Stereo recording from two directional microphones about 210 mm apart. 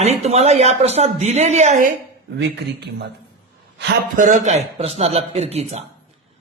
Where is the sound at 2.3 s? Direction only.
50° right (ahead or behind).